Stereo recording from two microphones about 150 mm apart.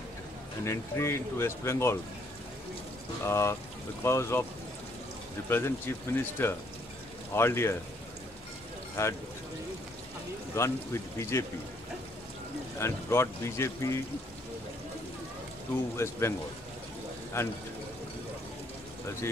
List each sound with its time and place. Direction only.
0.7 s speech: 20° left (ahead or behind)
3.3 s speech: 20° left (ahead or behind)
5.5 s speech: 15° left (ahead or behind)
9.0 s speech: 15° left (ahead or behind)
10.5 s speech: 20° left (ahead or behind)
12.7 s speech: 20° left (ahead or behind)
16.0 s speech: 15° left (ahead or behind)